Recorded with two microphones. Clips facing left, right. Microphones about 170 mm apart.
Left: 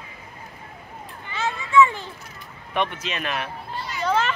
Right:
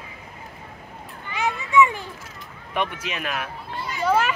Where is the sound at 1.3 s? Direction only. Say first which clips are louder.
Left 1 dB; 15° right (ahead or behind).